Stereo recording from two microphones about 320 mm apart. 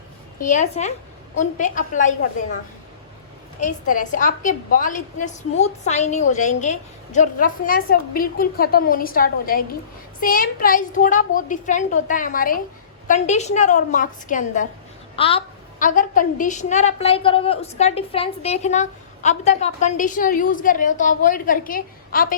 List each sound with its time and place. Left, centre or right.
0.3 s a woman's voice: left
3.6 s a woman's voice: left